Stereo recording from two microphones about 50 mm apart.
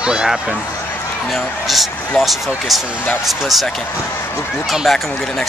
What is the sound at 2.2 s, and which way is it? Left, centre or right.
Speech, centre.